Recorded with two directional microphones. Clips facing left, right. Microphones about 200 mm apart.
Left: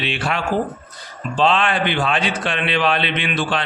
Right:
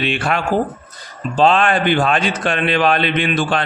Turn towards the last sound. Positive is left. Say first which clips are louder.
# right 4 dB
turn(degrees=-45)  # may be behind; listen again after turning